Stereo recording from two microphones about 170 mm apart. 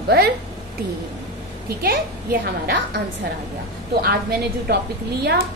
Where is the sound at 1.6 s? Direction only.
60° right (ahead or behind).